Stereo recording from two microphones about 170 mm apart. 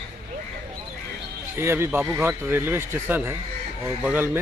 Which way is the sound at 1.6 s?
15° right (ahead or behind).